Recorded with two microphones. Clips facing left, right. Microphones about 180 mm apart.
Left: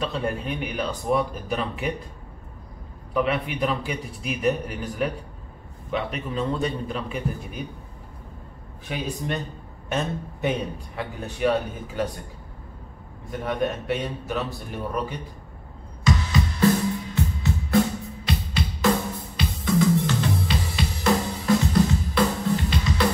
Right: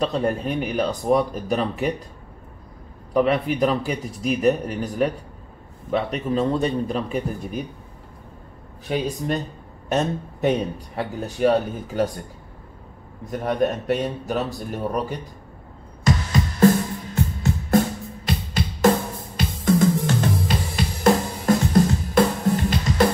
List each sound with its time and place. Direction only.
0.0 s a man's voice: 40° right (ahead or behind)
3.1 s a man's voice: 40° right (ahead or behind)
8.8 s a man's voice: 35° right (ahead or behind)
13.3 s a man's voice: 40° right (ahead or behind)
16.0 s music: 45° right (ahead or behind)